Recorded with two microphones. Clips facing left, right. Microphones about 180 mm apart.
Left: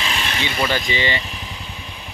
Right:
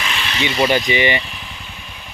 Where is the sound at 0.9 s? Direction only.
20° right (ahead or behind).